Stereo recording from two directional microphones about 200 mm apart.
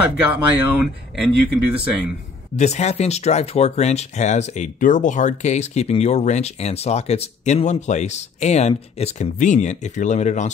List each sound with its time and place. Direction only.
0.0 s speech: 5° right (ahead or behind)
2.5 s speech: 35° left (ahead or behind)